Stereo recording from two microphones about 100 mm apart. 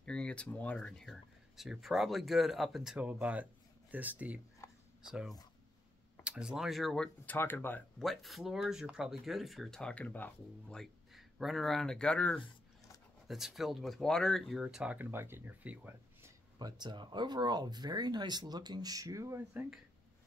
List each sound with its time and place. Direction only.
0.0 s speech: 10° left (ahead or behind); by 4.4 s 15° right (ahead or behind)
4.6 s a sound: 30° left (ahead or behind)
5.0 s speech: 5° right (ahead or behind)
7.2 s speech: 20° left (ahead or behind)
8.0 s speech: centre (ahead or behind)
10.8 s speech: centre (ahead or behind)
13.3 s speech: 5° right (ahead or behind)
14.6 s speech: 10° right (ahead or behind)
15.0 s speech: 20° right (ahead or behind)
16.5 s speech: 45° right (ahead or behind)